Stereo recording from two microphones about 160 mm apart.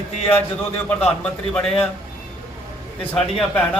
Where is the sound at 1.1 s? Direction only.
5° left (ahead or behind).